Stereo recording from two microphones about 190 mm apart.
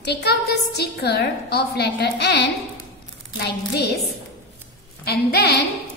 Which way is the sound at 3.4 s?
60° left (ahead or behind).